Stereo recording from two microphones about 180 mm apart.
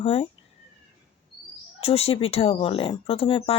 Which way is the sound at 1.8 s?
30° left (ahead or behind).